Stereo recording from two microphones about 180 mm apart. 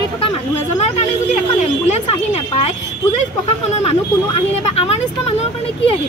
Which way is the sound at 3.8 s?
35° left (ahead or behind).